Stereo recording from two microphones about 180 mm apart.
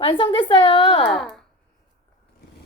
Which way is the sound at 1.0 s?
Centre (ahead or behind).